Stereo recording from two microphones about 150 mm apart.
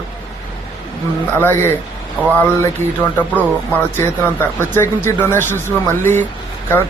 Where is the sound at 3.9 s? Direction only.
15° left (ahead or behind).